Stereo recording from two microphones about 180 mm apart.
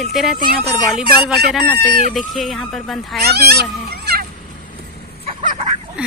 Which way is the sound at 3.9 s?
60° right (ahead or behind).